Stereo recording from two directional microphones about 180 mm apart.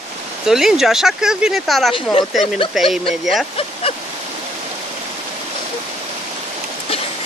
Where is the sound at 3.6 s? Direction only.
35° left (ahead or behind).